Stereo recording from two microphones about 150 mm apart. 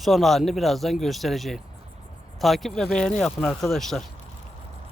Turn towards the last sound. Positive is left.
turn(degrees=0)  # may be behind; listen again after turning